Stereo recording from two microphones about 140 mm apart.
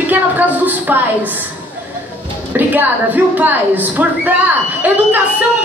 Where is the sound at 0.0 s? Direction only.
10° right (ahead or behind).